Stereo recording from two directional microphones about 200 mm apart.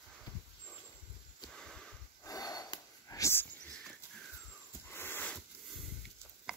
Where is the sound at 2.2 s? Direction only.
20° left (ahead or behind).